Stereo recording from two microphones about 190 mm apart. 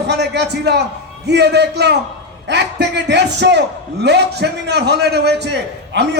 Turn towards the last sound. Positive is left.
turn(degrees=-65)  # may be behind; listen again after turning